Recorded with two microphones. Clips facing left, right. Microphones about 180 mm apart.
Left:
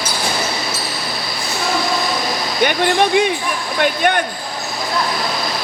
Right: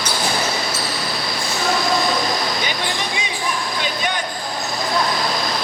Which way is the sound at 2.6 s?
60° left (ahead or behind).